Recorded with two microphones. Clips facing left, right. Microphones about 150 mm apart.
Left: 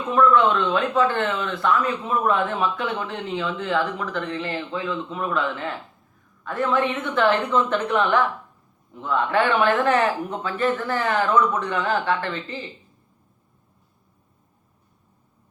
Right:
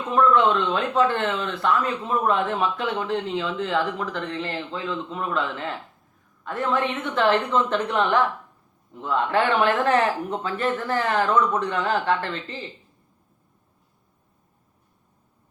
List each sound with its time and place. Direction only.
0.1 s speech: 30° right (ahead or behind)